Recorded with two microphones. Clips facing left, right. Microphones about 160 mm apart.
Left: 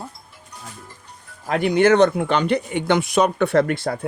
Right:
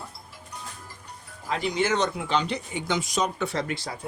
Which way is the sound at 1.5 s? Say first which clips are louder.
Left 10 dB; 60° left (ahead or behind).